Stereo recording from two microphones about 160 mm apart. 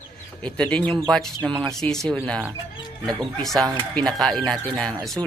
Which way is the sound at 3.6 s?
20° right (ahead or behind).